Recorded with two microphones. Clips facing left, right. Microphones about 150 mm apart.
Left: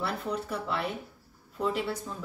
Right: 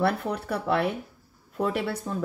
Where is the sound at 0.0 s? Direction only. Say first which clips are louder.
Right 6 dB; 65° right (ahead or behind).